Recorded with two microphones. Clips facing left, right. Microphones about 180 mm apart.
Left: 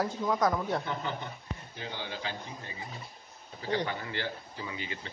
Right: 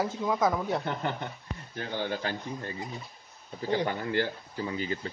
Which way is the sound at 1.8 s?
50° right (ahead or behind).